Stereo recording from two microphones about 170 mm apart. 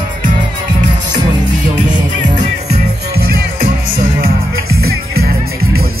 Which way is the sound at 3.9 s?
60° right (ahead or behind).